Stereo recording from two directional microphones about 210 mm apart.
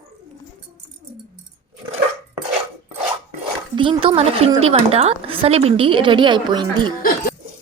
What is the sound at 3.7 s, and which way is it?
A woman's voice, 25° right (ahead or behind).